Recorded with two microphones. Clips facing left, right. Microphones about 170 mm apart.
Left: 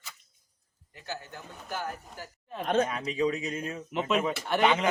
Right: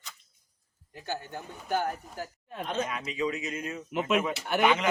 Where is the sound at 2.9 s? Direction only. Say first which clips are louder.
Left 3 dB; 35° left (ahead or behind).